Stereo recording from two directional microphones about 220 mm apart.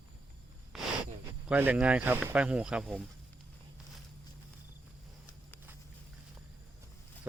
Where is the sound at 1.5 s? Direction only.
5° right (ahead or behind).